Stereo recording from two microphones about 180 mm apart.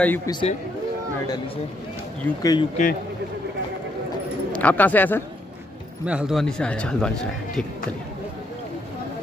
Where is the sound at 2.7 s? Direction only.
50° left (ahead or behind).